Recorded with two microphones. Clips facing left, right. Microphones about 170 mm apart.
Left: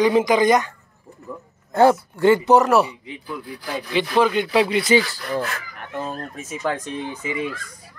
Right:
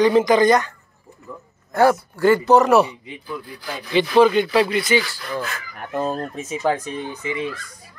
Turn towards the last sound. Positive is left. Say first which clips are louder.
# even
turn(degrees=10)  # may be behind; listen again after turning